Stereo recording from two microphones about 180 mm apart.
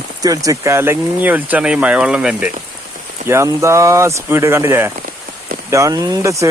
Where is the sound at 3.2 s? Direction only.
15° right (ahead or behind).